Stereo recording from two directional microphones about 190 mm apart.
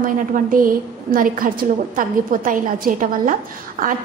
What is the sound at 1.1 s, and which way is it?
A woman's voice, 50° right (ahead or behind).